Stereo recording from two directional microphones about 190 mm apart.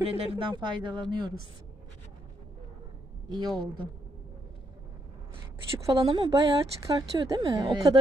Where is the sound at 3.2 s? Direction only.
20° right (ahead or behind).